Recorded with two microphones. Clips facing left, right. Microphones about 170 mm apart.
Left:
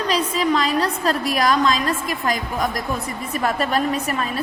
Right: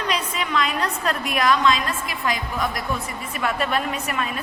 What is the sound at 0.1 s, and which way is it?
A woman's voice, 35° left (ahead or behind).